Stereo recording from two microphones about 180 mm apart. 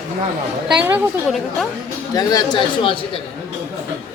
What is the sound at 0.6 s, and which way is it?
Speech, 10° right (ahead or behind).